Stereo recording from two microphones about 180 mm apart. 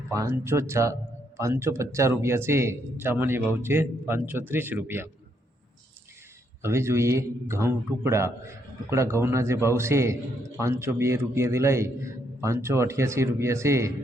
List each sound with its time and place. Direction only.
0.1 s speech: 15° right (ahead or behind)
6.6 s speech: 15° right (ahead or behind)